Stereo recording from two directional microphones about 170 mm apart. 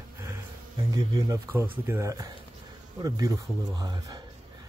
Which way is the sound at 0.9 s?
20° right (ahead or behind).